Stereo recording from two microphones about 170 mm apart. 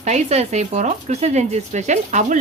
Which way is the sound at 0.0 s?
40° right (ahead or behind).